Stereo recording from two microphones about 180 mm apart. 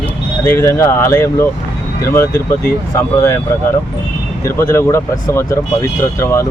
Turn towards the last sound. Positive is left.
turn(degrees=15)  # may be behind; listen again after turning